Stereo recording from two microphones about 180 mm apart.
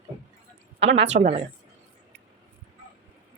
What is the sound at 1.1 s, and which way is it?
Speech, 50° right (ahead or behind).